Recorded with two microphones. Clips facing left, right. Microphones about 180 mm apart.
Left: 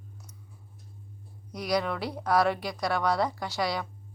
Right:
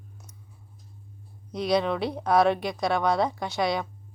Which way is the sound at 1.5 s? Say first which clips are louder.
Right 4 dB; 25° right (ahead or behind).